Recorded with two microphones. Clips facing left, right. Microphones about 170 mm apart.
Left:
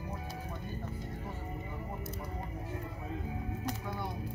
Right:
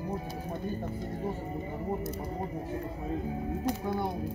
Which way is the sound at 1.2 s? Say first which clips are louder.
Right 8 dB; 35° right (ahead or behind).